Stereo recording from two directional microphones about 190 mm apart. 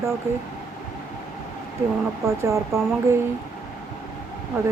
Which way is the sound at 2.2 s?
15° right (ahead or behind).